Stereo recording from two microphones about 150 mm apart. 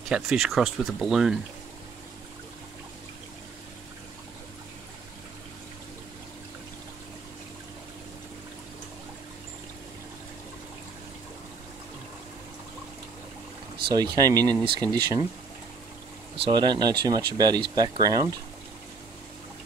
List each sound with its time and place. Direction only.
0.1 s speech: centre (ahead or behind)
13.8 s speech: 30° right (ahead or behind)
16.4 s speech: 30° right (ahead or behind)